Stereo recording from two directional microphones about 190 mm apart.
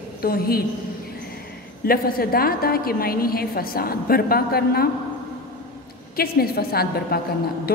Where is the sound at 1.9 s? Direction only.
50° left (ahead or behind).